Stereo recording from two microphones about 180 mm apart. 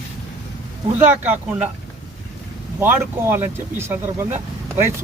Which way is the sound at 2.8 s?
10° right (ahead or behind).